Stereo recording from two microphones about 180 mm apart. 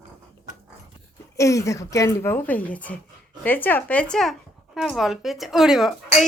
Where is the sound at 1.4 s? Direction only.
15° left (ahead or behind); by 6.2 s centre (ahead or behind).